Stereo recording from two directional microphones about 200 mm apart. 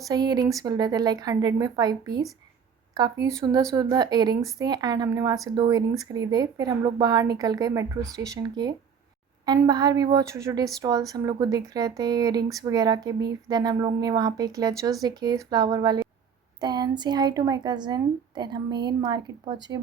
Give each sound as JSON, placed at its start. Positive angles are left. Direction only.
{"t": 0.1, "sound": "a woman's voice", "side_deg": -20}